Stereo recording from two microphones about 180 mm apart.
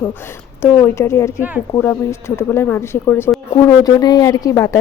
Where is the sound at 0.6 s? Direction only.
15° left (ahead or behind).